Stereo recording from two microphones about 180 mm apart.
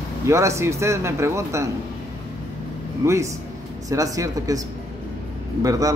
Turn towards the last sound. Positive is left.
turn(degrees=-20)  # may be behind; listen again after turning